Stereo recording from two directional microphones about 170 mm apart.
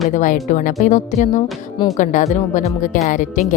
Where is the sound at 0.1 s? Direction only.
45° left (ahead or behind).